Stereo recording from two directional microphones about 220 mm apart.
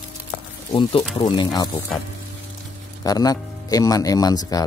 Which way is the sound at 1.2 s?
20° left (ahead or behind).